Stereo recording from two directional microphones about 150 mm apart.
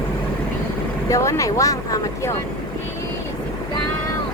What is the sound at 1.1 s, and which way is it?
Speech, 20° left (ahead or behind).